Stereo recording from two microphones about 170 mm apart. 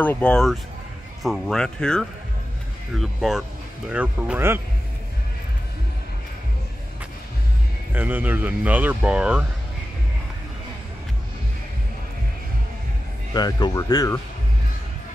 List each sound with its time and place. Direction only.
0.0 s speech: 10° left (ahead or behind); by 4.6 s 10° right (ahead or behind)
7.9 s speech: 10° right (ahead or behind)
13.3 s speech: 25° left (ahead or behind)